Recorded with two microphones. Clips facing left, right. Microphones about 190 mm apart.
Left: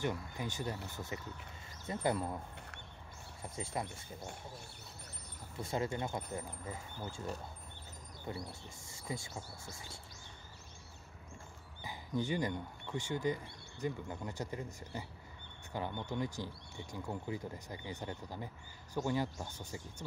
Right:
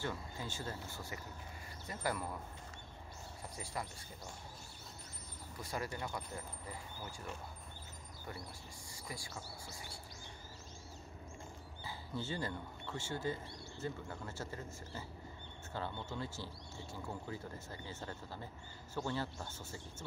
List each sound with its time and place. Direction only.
0.0 s speech: 15° left (ahead or behind)
3.4 s speech: 25° left (ahead or behind)
5.6 s speech: 25° left (ahead or behind)
8.3 s speech: 25° left (ahead or behind)
11.8 s speech: 15° left (ahead or behind)